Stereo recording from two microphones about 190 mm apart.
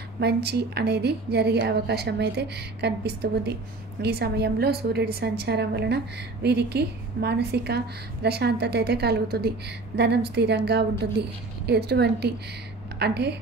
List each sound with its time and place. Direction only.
0.2 s a woman's voice: 60° right (ahead or behind)